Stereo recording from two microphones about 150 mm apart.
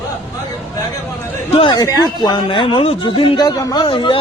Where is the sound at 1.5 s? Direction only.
30° left (ahead or behind).